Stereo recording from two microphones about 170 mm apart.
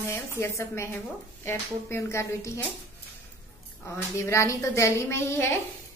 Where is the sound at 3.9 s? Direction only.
15° left (ahead or behind).